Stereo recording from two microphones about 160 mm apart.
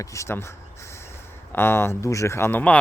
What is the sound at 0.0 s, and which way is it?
Speech, 20° left (ahead or behind).